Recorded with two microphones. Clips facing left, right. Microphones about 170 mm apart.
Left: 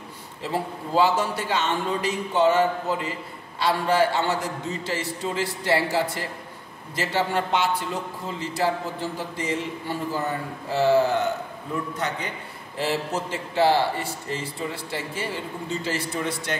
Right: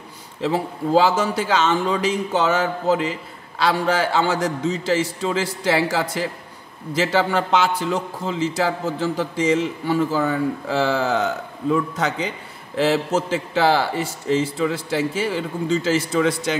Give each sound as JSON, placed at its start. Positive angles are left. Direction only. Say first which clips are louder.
{"t": 0.4, "sound": "a man's voice", "louder": "right 6 dB", "side_deg": -90}